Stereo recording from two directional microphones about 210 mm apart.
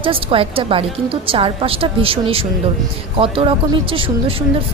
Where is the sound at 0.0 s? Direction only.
25° right (ahead or behind).